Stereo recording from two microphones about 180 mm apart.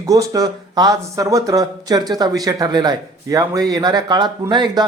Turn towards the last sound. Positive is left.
turn(degrees=-25)  # may be behind; listen again after turning